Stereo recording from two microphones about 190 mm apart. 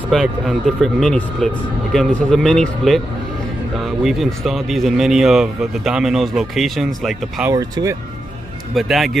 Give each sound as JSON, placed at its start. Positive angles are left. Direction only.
{"t": 0.1, "sound": "speech", "side_deg": 0}
{"t": 4.0, "sound": "speech", "side_deg": 0}
{"t": 7.4, "sound": "speech", "side_deg": -15}
{"t": 8.7, "sound": "speech", "side_deg": 0}